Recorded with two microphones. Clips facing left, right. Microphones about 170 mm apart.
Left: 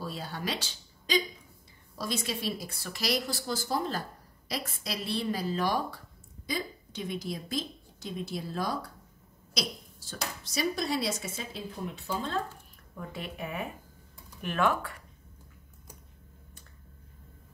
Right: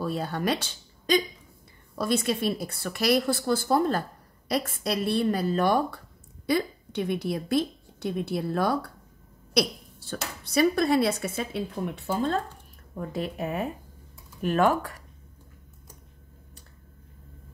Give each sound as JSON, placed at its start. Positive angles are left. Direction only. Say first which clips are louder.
{"t": 0.0, "sound": "a woman's voice", "louder": "right 8 dB", "side_deg": -55}
{"t": 12.9, "sound": "speech", "louder": "right 8 dB", "side_deg": -40}